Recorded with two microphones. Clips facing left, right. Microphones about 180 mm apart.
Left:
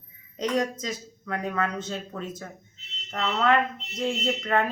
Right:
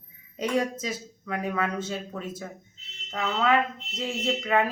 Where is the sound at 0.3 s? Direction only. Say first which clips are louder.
Even; 5° right (ahead or behind).